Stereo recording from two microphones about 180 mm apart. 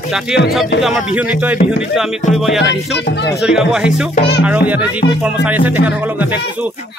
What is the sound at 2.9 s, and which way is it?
Speech, 70° left (ahead or behind).